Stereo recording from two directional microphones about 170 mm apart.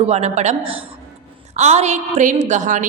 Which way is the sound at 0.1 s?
40° right (ahead or behind).